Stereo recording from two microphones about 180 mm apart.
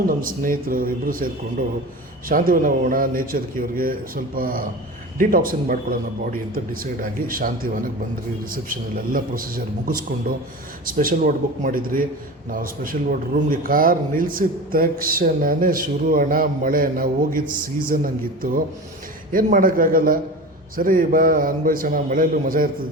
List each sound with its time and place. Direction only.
0.2 s speech: 50° right (ahead or behind)
2.3 s speech: 50° right (ahead or behind)
7.3 s speech: 50° right (ahead or behind)
10.8 s speech: 50° right (ahead or behind)